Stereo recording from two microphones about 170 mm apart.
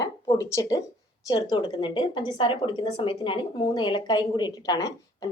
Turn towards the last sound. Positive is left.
turn(degrees=20)  # may be behind; listen again after turning